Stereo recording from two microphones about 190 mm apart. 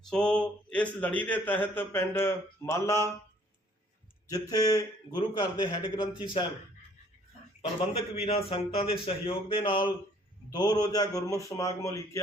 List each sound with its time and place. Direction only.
0.1 s a man's voice: 5° left (ahead or behind)
4.4 s a man's voice: 20° left (ahead or behind)
8.1 s a man's voice: 30° left (ahead or behind); by 12.2 s 15° left (ahead or behind)